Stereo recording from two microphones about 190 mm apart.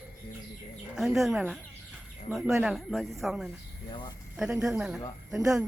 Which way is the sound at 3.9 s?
25° left (ahead or behind).